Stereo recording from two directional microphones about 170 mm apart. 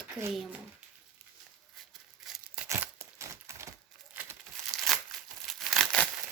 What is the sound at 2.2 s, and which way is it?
Tearing, centre (ahead or behind).